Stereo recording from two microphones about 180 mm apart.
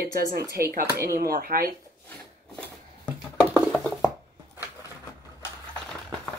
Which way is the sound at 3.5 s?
5° left (ahead or behind).